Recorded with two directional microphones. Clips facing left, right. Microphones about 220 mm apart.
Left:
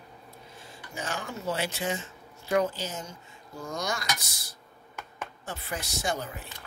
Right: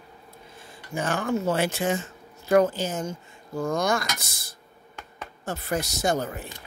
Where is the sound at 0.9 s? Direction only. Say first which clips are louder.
Right 10 dB; 55° right (ahead or behind).